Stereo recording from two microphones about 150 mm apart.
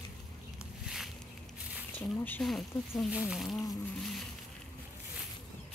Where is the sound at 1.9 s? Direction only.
10° left (ahead or behind).